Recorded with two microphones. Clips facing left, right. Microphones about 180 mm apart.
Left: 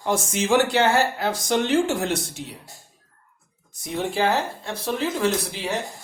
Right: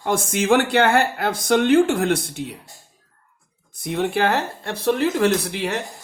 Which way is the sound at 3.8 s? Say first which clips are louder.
Right 3 dB; 60° right (ahead or behind).